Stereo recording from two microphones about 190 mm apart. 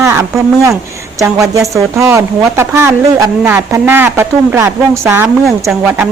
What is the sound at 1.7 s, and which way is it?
Speech, 15° right (ahead or behind).